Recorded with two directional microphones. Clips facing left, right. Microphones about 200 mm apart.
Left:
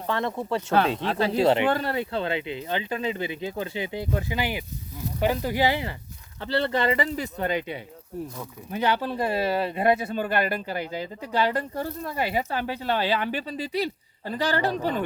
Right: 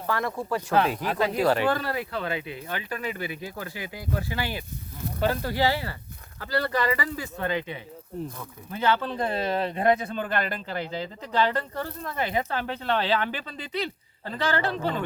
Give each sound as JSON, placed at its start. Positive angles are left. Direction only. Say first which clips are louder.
{"t": 0.1, "sound": "speech", "louder": "left 1 dB", "side_deg": 25}